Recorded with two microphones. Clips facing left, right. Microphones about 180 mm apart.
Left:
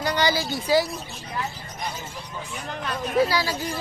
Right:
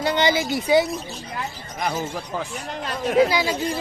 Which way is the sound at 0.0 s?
25° right (ahead or behind).